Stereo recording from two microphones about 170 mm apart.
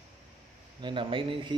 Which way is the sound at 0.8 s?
30° right (ahead or behind).